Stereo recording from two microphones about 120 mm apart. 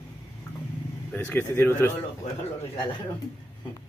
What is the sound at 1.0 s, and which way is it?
Speech, 15° left (ahead or behind).